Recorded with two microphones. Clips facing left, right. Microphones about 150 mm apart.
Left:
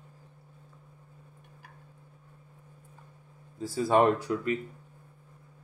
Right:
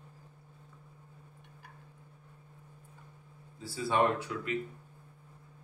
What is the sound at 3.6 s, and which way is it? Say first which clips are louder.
Speech: left 6 dB; 45° left (ahead or behind).